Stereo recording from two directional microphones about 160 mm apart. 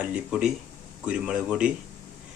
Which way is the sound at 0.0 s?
5° right (ahead or behind).